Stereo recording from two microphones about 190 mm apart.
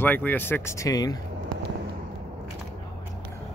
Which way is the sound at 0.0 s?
10° left (ahead or behind).